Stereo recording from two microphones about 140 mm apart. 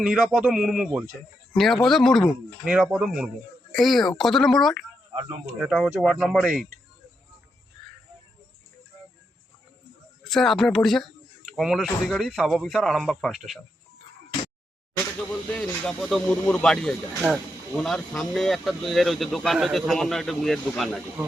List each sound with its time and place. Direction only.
0.0 s speech: 5° right (ahead or behind)
10.2 s speech: centre (ahead or behind)
15.3 s speech: 5° left (ahead or behind)